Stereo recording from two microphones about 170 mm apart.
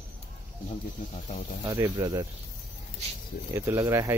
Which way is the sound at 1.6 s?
20° right (ahead or behind).